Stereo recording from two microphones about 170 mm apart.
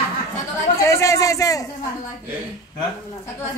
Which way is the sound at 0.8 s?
20° left (ahead or behind).